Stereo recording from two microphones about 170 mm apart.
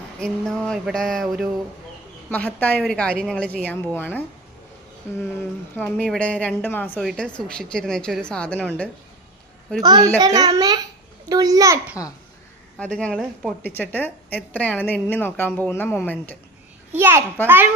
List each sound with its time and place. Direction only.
0.2 s a woman's voice: 5° left (ahead or behind)
5.2 s a woman's voice: 10° left (ahead or behind)
9.8 s a child's voice: 25° right (ahead or behind)
12.8 s a woman's voice: 5° left (ahead or behind)
16.9 s a child's voice: 10° right (ahead or behind)